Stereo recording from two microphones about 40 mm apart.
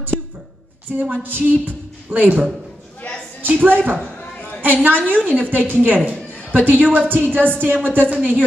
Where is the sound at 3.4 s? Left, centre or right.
Right.